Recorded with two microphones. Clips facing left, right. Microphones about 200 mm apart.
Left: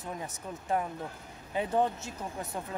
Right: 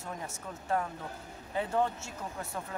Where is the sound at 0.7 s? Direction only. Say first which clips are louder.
Left 1 dB; 15° left (ahead or behind).